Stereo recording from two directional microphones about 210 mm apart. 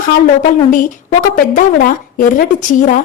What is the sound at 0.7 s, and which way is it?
A woman's voice, 40° left (ahead or behind).